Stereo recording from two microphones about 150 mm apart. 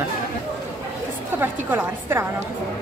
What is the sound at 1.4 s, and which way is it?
Speech, 15° right (ahead or behind).